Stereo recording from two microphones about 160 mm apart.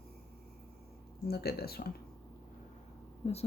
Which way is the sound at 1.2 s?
75° left (ahead or behind).